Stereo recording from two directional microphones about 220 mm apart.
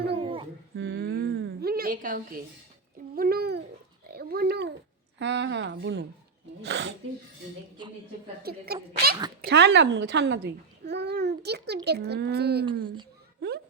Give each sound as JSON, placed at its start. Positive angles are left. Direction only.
{"t": 0.1, "sound": "dog", "side_deg": -25}
{"t": 0.8, "sound": "a sound", "side_deg": -55}
{"t": 5.2, "sound": "speech", "side_deg": -55}
{"t": 8.4, "sound": "a child's voice", "side_deg": -45}